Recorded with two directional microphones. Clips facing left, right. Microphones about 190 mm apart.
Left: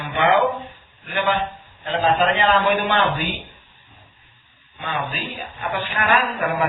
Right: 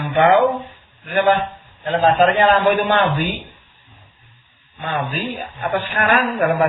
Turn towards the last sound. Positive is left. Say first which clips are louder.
# right 4 dB
turn(degrees=-50)  # may be behind; listen again after turning